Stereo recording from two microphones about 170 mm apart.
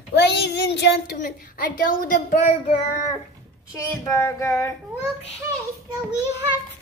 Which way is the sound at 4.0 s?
20° left (ahead or behind).